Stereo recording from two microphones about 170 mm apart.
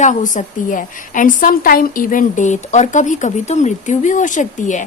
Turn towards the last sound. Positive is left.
turn(degrees=45)  # may be behind; listen again after turning